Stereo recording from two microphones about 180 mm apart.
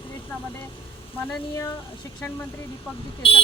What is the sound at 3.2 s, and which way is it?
Speech, 30° left (ahead or behind).